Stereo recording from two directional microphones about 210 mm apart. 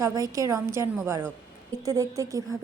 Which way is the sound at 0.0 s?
15° right (ahead or behind).